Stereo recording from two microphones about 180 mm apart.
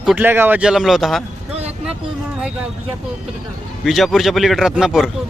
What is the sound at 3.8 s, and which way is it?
A man's voice, centre (ahead or behind).